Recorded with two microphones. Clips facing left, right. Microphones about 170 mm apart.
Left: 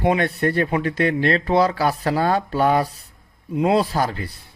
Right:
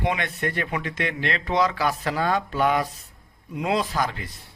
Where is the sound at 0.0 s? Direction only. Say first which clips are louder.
Left 7 dB; 35° left (ahead or behind).